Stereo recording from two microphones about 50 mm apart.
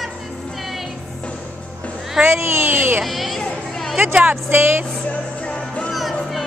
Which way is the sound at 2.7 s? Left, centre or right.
Right.